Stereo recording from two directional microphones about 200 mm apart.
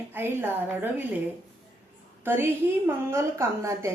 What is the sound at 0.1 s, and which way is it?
Speech, 10° right (ahead or behind).